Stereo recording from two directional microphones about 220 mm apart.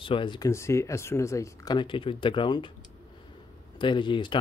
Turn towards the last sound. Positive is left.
turn(degrees=20)  # may be behind; listen again after turning